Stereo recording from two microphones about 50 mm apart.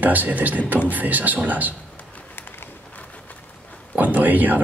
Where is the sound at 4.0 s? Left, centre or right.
Right.